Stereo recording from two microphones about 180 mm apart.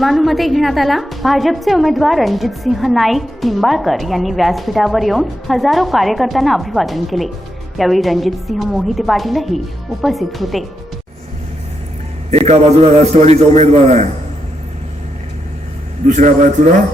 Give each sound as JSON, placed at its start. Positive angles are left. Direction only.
{"t": 0.0, "sound": "a woman's voice", "side_deg": 0}
{"t": 12.3, "sound": "a man's voice", "side_deg": -35}
{"t": 16.0, "sound": "a man's voice", "side_deg": -40}